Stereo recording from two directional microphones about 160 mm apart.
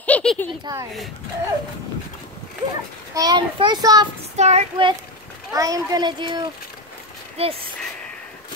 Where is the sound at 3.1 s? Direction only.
25° right (ahead or behind).